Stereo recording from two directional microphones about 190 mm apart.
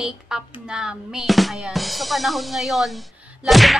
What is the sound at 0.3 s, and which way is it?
Drum kit, 5° right (ahead or behind).